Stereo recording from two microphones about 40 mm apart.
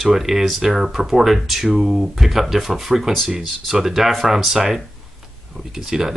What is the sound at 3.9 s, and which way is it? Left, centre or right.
Speech, centre.